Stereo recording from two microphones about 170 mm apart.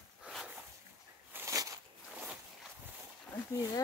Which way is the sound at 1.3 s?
15° right (ahead or behind).